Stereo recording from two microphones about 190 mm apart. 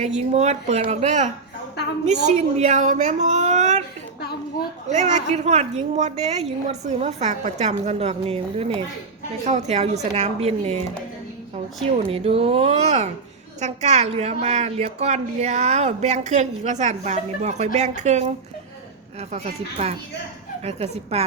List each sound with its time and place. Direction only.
0.2 s a woman's voice: 35° right (ahead or behind)
4.9 s a woman's voice: 40° right (ahead or behind)
12.0 s a woman's voice: 30° right (ahead or behind)
19.3 s a woman's voice: 35° right (ahead or behind)